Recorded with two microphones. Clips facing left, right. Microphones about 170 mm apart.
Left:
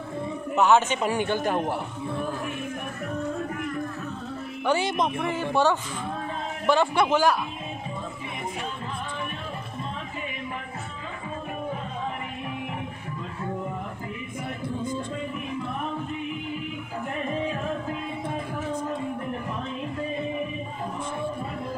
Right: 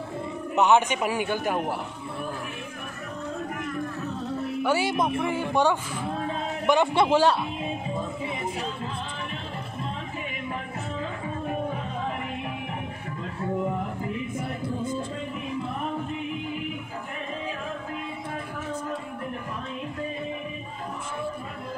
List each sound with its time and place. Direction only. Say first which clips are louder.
0.6 s speech: even; 15° right (ahead or behind)
4.6 s a man's voice: left 1 dB; 10° right (ahead or behind); by 7.3 s 30° right (ahead or behind)